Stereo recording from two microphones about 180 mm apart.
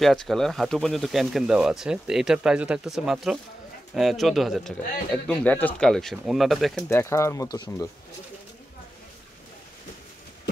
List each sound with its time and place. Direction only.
0.0 s speech: centre (ahead or behind)
6.8 s speech: 15° left (ahead or behind)